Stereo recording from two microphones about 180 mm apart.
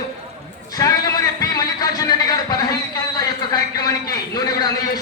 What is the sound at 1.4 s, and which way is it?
Music, 20° left (ahead or behind).